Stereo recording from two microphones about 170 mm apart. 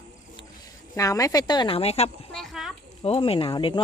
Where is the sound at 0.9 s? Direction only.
20° left (ahead or behind); by 2.0 s 35° left (ahead or behind).